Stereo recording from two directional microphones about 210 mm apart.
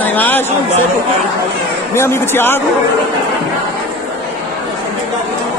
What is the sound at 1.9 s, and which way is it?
Speech, 10° left (ahead or behind).